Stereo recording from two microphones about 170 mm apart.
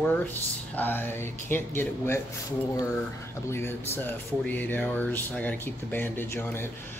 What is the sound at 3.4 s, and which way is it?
Speech, 15° left (ahead or behind).